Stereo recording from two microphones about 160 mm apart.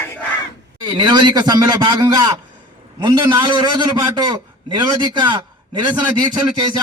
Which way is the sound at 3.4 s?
30° right (ahead or behind).